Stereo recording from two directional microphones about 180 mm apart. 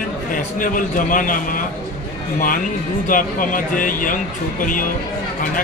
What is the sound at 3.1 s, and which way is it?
Speech, 50° left (ahead or behind).